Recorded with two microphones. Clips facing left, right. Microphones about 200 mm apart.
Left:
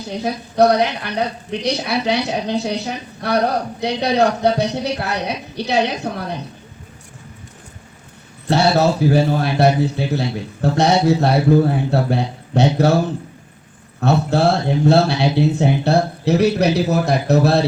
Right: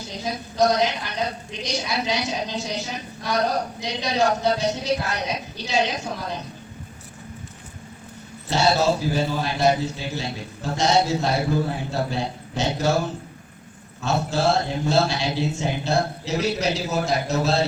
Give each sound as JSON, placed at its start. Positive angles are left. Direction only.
{"t": 0.1, "sound": "a woman's voice", "side_deg": 60}
{"t": 8.4, "sound": "a woman's voice", "side_deg": 60}
{"t": 14.0, "sound": "a woman's voice", "side_deg": 60}